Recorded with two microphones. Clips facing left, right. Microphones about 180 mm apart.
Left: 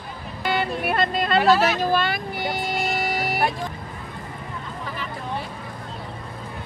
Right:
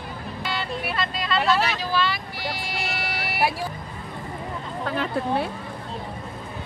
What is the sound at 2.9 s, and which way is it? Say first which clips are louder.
Vehicle: left 6 dB; 45° left (ahead or behind).